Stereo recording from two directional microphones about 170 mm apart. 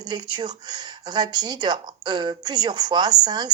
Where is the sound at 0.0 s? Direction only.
25° right (ahead or behind).